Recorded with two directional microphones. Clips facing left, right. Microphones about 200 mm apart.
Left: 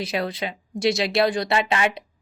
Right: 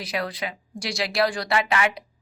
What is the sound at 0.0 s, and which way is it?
A woman's voice, 25° left (ahead or behind).